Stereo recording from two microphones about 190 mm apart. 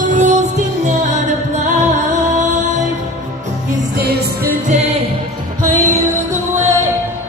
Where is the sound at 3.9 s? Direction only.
55° right (ahead or behind).